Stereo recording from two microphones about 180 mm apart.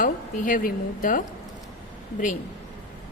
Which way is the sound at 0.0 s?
45° left (ahead or behind).